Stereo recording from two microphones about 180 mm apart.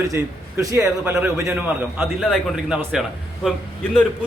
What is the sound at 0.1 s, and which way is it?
A man's voice, 20° right (ahead or behind).